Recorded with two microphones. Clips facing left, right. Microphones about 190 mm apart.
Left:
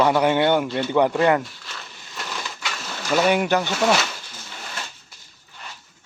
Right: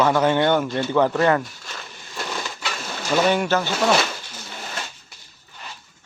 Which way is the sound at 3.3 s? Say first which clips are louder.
Left 1 dB; 15° left (ahead or behind).